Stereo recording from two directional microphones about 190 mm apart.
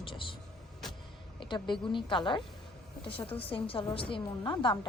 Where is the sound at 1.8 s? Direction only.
25° left (ahead or behind).